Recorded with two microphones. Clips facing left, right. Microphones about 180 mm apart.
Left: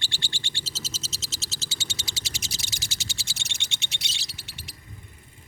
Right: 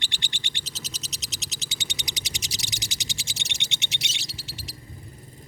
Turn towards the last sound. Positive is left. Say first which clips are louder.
# right 4 dB
turn(degrees=55)  # may be behind; listen again after turning